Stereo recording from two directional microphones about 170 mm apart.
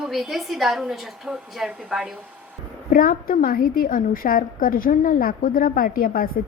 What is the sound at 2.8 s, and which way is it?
A woman's voice, 55° left (ahead or behind).